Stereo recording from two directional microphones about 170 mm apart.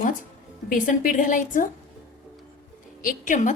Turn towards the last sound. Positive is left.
turn(degrees=50)  # may be behind; listen again after turning